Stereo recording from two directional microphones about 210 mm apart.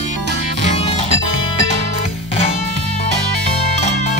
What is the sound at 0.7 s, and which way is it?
Music, 30° left (ahead or behind).